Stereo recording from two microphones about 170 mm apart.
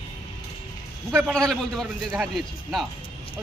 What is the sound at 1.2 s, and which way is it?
Speech, centre (ahead or behind).